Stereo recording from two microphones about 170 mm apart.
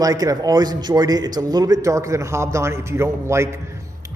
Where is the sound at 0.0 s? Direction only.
20° right (ahead or behind).